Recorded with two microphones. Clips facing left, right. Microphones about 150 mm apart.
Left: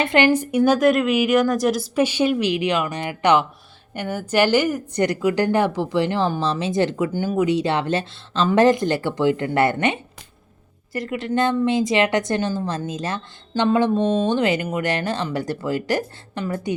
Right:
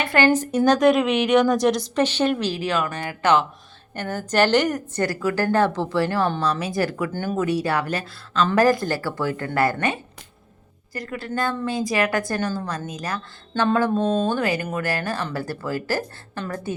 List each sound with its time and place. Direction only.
0.0 s a woman's voice: 20° left (ahead or behind)
5.0 s a woman's voice: 20° left (ahead or behind)
10.9 s speech: 20° left (ahead or behind)
14.0 s speech: centre (ahead or behind)
14.3 s speech: 20° left (ahead or behind)